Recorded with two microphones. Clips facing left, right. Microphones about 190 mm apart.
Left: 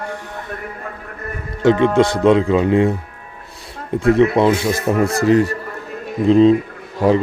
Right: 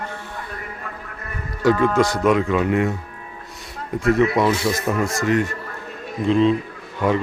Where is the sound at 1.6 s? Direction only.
25° left (ahead or behind).